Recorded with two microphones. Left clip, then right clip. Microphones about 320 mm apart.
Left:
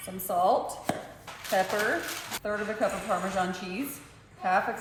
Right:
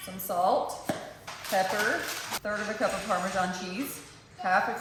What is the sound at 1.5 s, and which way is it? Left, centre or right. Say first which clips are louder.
Speech: even; centre.